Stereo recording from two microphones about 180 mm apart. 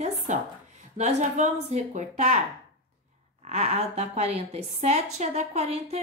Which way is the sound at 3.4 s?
35° right (ahead or behind).